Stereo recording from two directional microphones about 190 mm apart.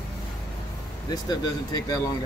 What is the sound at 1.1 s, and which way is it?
Speech, 20° left (ahead or behind).